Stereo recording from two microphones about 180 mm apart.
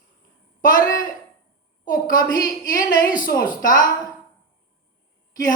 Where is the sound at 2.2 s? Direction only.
20° left (ahead or behind).